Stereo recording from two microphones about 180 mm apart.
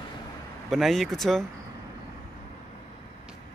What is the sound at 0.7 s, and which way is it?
Speech, centre (ahead or behind).